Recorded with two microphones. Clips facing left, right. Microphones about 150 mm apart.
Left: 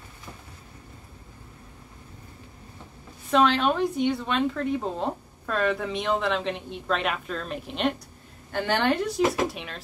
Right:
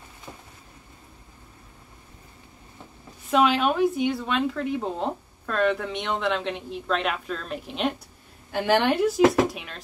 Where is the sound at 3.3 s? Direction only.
10° right (ahead or behind).